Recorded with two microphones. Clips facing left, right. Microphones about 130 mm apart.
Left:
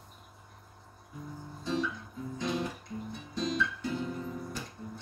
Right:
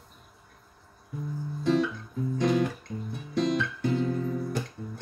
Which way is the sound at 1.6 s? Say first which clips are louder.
Right 8 dB; 70° right (ahead or behind).